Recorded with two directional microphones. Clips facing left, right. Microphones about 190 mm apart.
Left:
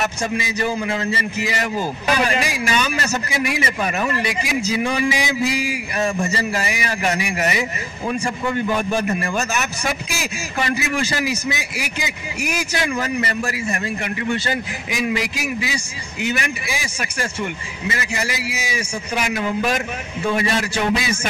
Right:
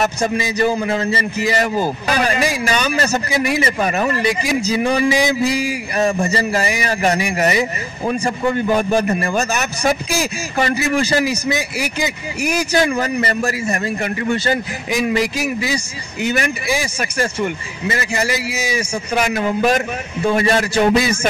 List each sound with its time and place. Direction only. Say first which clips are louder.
0.0 s a man's voice: right 5 dB; 35° right (ahead or behind)